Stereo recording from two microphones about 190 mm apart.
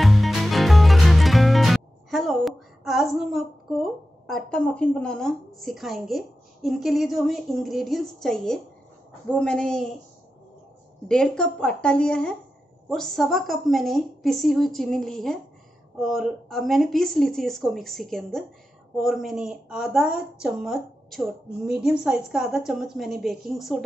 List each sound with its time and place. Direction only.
0.0 s music: centre (ahead or behind)
4.3 s a woman's voice: centre (ahead or behind)
11.1 s a woman's voice: 5° left (ahead or behind)